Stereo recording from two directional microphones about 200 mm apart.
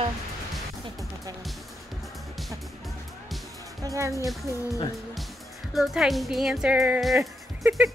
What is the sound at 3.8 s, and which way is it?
Speech, 15° right (ahead or behind).